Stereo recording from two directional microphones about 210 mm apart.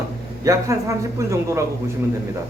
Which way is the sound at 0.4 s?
15° right (ahead or behind).